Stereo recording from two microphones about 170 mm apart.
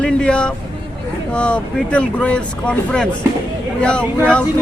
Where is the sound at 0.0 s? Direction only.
5° left (ahead or behind).